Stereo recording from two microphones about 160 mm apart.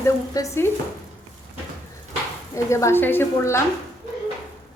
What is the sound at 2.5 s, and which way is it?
A woman's voice, 20° left (ahead or behind).